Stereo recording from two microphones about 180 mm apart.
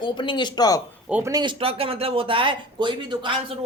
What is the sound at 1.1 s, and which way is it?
Speech, 10° right (ahead or behind).